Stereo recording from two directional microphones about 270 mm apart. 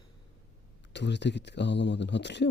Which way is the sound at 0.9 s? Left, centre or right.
Left.